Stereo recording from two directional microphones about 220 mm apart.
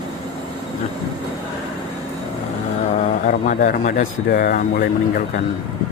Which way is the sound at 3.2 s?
35° left (ahead or behind).